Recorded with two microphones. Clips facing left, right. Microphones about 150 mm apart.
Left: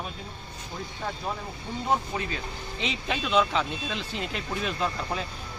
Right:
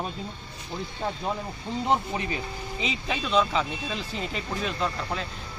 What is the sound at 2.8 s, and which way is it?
A man's voice, centre (ahead or behind).